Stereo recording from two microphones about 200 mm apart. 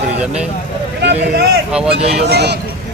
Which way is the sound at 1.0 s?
60° right (ahead or behind).